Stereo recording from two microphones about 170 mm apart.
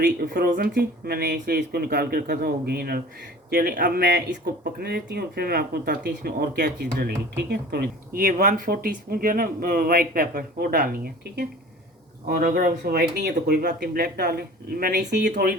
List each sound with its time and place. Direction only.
0.0 s speech: 70° right (ahead or behind)
13.0 s speech: 70° right (ahead or behind)